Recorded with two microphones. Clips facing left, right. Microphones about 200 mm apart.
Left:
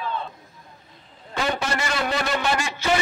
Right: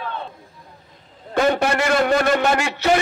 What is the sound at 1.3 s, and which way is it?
A man's voice, 55° right (ahead or behind).